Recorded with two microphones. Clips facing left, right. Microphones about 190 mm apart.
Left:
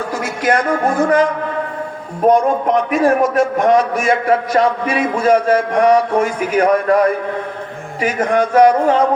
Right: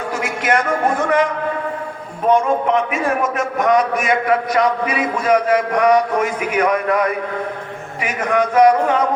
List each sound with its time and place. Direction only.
0.4 s a man's voice: 35° left (ahead or behind)